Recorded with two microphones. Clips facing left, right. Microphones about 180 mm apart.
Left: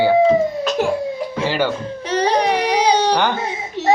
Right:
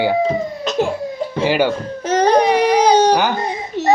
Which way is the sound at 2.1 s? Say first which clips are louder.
Right 4 dB; 45° right (ahead or behind).